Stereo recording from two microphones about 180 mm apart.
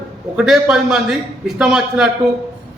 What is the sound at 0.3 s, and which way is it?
A man's voice, 5° right (ahead or behind).